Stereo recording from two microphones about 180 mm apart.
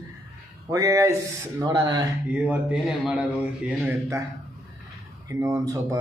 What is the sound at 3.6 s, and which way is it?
Speech, 15° right (ahead or behind).